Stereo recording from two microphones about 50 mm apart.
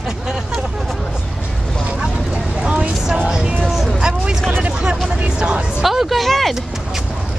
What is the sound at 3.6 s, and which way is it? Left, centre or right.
Vehicle, centre.